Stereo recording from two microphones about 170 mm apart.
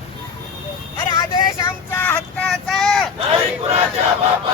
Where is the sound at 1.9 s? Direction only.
10° left (ahead or behind).